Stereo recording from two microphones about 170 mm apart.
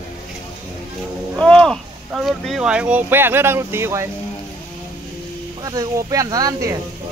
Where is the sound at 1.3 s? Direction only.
5° left (ahead or behind); by 4.0 s 15° right (ahead or behind).